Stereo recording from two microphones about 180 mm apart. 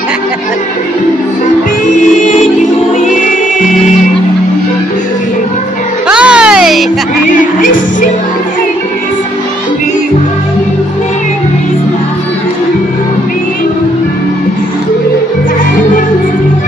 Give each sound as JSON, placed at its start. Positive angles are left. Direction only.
{"t": 6.0, "sound": "music", "side_deg": -5}
{"t": 7.2, "sound": "music", "side_deg": 45}